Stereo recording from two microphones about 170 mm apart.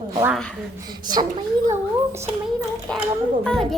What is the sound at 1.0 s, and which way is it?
A woman's voice, 25° right (ahead or behind).